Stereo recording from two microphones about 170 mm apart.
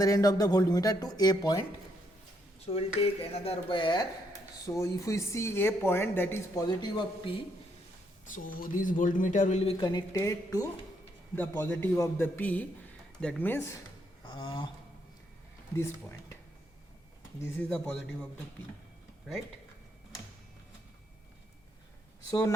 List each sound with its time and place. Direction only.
0.0 s speech: 20° left (ahead or behind)
2.6 s speech: 35° left (ahead or behind); by 6.7 s 15° left (ahead or behind)
6.7 s speech: 25° left (ahead or behind)
8.3 s speech: 55° left (ahead or behind); by 13.7 s 15° left (ahead or behind)
14.3 s speech: 30° left (ahead or behind)
15.7 s speech: 15° left (ahead or behind)
17.4 s speech: 10° left (ahead or behind)
22.3 s speech: 20° left (ahead or behind)